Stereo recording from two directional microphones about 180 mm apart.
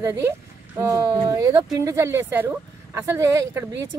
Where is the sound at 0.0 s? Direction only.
15° right (ahead or behind).